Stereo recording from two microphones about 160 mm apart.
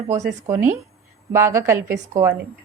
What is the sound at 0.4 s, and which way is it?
A woman's voice, 15° right (ahead or behind).